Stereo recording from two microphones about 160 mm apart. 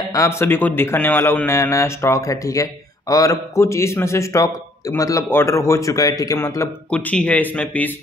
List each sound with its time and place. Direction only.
0.1 s a man's voice: 20° left (ahead or behind)